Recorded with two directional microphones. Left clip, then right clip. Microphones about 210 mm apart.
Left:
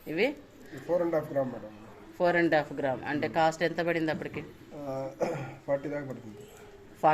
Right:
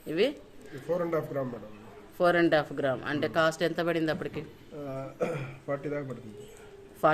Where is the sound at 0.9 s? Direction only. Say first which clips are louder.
Left 1 dB; 30° right (ahead or behind).